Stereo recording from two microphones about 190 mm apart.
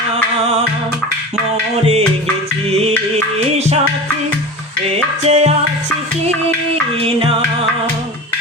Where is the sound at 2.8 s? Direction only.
35° right (ahead or behind).